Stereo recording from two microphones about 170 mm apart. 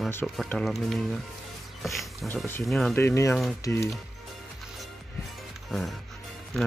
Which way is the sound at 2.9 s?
15° left (ahead or behind).